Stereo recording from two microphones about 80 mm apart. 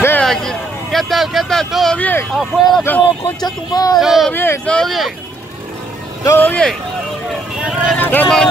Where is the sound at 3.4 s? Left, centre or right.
Left.